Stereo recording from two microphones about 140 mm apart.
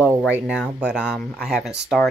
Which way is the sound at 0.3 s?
5° right (ahead or behind).